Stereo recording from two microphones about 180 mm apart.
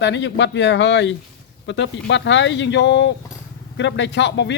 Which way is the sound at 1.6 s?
90° left.